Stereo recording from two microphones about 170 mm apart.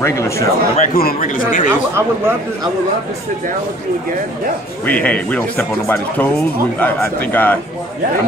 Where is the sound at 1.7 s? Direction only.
15° right (ahead or behind).